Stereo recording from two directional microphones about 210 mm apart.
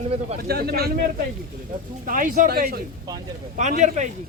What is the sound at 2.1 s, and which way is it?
Speech, 40° right (ahead or behind).